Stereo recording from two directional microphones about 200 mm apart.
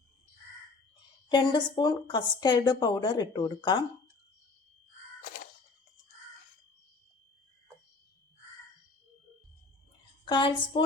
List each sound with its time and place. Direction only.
1.3 s a woman's voice: 20° left (ahead or behind)
10.2 s a woman's voice: 25° left (ahead or behind)